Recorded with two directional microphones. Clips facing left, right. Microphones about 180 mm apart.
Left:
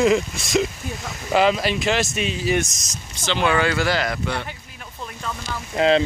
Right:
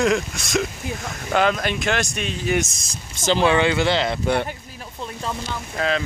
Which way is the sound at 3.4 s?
25° right (ahead or behind).